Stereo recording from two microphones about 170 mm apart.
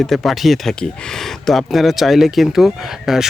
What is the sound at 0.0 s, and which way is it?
Speech, centre (ahead or behind).